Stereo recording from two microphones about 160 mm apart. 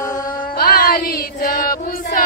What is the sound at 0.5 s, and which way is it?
Music, 75° left (ahead or behind).